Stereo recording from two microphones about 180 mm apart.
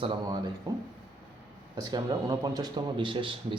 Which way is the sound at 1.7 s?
20° right (ahead or behind).